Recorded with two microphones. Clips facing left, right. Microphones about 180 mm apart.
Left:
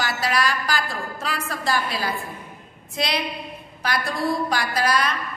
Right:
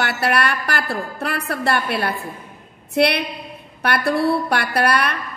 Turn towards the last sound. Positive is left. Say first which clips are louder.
# right 3 dB
turn(degrees=-65)  # may be behind; listen again after turning